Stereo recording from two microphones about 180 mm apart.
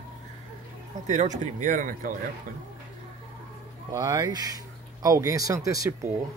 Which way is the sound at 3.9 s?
20° right (ahead or behind).